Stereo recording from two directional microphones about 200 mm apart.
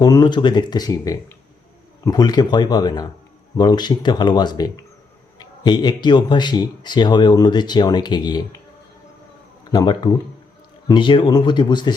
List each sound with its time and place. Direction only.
0.0 s speech: 20° left (ahead or behind)
9.7 s speech: 25° left (ahead or behind)